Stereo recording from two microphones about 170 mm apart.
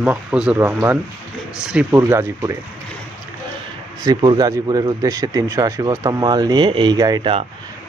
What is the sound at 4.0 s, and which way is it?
Speech, 25° right (ahead or behind).